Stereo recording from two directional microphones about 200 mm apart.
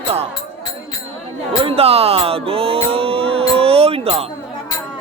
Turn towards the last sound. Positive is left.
turn(degrees=-30)  # may be behind; listen again after turning